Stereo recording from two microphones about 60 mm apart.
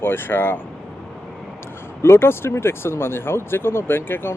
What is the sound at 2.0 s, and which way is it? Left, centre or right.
Speech, left.